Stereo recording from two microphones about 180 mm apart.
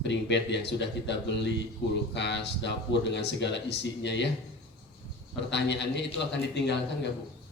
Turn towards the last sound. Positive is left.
turn(degrees=75)  # may be behind; listen again after turning